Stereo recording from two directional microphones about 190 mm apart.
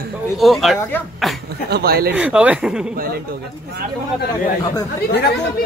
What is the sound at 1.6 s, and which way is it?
Speech, 55° right (ahead or behind).